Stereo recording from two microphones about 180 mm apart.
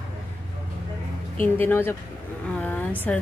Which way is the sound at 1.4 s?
10° left (ahead or behind).